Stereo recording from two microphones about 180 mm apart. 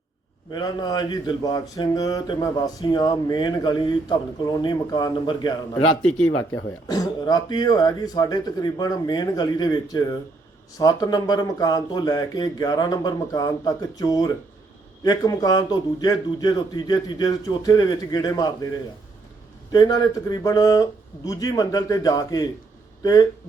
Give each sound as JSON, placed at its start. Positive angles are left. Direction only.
{"t": 0.5, "sound": "a man's voice", "side_deg": 20}
{"t": 19.7, "sound": "a man's voice", "side_deg": 20}